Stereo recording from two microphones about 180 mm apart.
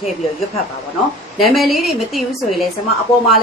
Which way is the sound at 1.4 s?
Centre (ahead or behind).